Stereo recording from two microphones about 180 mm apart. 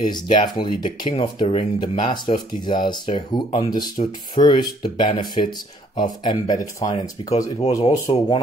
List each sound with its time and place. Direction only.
0.0 s speech: 25° left (ahead or behind)
8.1 s speech: 30° left (ahead or behind)